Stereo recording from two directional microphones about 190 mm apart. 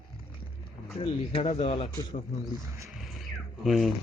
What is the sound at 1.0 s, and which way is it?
Speech, 30° left (ahead or behind).